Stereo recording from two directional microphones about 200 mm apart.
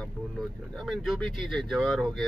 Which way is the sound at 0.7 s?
Centre (ahead or behind).